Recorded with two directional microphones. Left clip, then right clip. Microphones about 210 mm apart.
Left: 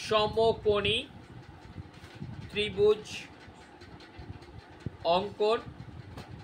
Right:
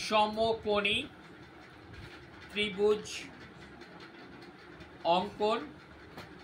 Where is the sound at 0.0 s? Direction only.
55° left (ahead or behind).